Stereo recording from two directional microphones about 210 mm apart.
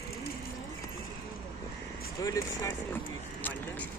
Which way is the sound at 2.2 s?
15° left (ahead or behind).